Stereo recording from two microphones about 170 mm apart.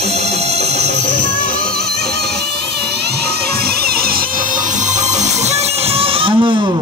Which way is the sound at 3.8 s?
65° right (ahead or behind).